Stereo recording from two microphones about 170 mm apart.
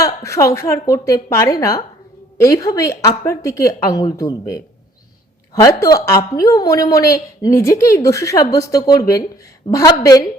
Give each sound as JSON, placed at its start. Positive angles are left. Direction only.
{"t": 0.0, "sound": "a woman's voice", "side_deg": 20}